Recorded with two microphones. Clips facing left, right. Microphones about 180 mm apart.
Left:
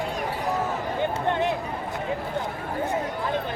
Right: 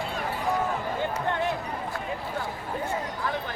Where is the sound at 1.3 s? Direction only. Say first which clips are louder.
Left 3 dB; 20° left (ahead or behind).